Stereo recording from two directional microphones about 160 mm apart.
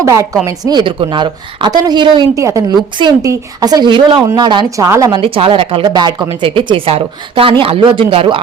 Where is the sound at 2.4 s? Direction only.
20° right (ahead or behind).